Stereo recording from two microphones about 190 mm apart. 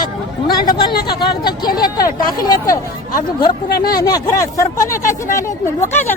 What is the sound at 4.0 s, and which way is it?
Speech, 20° left (ahead or behind).